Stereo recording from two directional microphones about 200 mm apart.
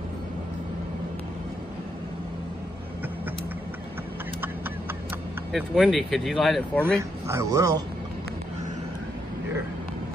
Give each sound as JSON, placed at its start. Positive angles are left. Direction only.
{"t": 5.5, "sound": "speech", "side_deg": 0}
{"t": 7.0, "sound": "speech", "side_deg": -15}